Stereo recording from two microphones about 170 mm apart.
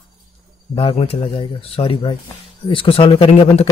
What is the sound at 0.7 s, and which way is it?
Speech, 35° left (ahead or behind).